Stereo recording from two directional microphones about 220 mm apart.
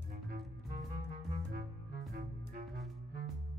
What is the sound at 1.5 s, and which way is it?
Music, 45° right (ahead or behind).